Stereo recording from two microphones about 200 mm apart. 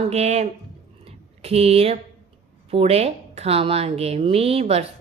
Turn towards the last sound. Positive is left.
turn(degrees=-30)  # may be behind; listen again after turning